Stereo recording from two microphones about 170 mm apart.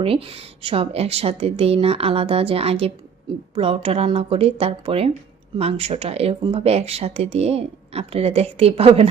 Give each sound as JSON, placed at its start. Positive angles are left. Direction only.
{"t": 0.0, "sound": "speech", "side_deg": -35}